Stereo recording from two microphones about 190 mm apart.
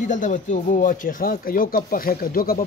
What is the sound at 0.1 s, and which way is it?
Speech, 40° left (ahead or behind).